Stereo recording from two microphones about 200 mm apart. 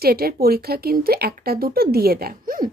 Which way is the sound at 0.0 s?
50° right (ahead or behind).